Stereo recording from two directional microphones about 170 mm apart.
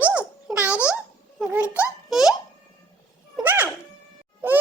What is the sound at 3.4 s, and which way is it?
Music, 10° right (ahead or behind).